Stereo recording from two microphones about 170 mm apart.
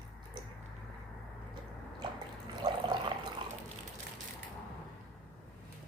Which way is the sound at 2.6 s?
25° right (ahead or behind).